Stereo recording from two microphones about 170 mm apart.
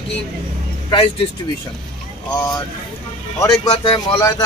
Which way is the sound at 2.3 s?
25° left (ahead or behind).